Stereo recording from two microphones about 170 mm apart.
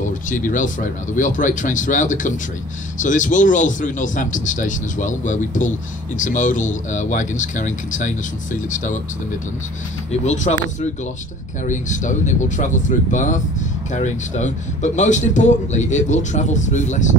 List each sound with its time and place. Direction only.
0.3 s speech: 50° left (ahead or behind)
10.2 s speech: 45° left (ahead or behind)
11.6 s speech: 45° left (ahead or behind)